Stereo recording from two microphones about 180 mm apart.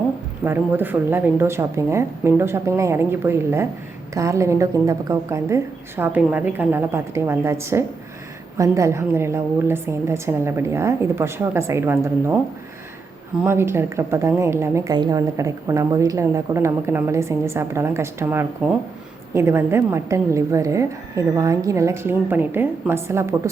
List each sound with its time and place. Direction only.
0.4 s a woman's voice: 10° right (ahead or behind)
13.4 s a woman's voice: 15° right (ahead or behind)